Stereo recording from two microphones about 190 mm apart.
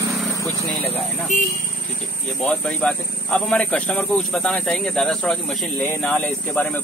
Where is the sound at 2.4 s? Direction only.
5° left (ahead or behind).